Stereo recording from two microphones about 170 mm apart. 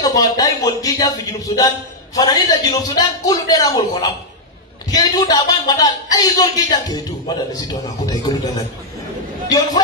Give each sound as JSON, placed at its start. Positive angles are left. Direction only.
{"t": 0.0, "sound": "a man's voice", "side_deg": 20}